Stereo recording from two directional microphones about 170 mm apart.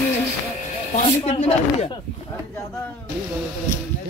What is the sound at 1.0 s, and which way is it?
Speech, 35° left (ahead or behind).